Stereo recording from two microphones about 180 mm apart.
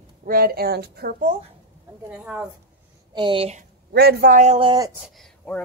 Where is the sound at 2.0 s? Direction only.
10° right (ahead or behind).